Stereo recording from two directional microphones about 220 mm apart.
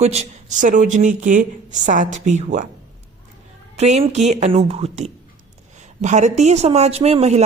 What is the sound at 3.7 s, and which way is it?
Speech, 30° right (ahead or behind).